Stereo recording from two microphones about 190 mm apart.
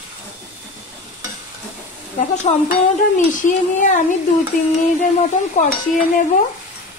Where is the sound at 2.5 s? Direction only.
35° left (ahead or behind).